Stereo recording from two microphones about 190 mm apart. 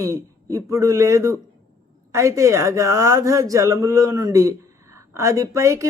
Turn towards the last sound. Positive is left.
turn(degrees=-15)  # may be behind; listen again after turning